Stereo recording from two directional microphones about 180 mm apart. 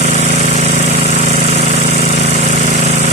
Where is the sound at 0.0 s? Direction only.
35° right (ahead or behind).